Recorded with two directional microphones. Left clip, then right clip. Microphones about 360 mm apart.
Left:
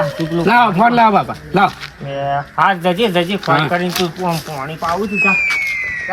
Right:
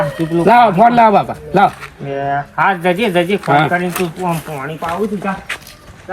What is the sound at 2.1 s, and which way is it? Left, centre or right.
Speech, left.